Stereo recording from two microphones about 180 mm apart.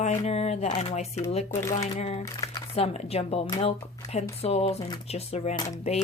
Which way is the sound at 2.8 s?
35° left (ahead or behind).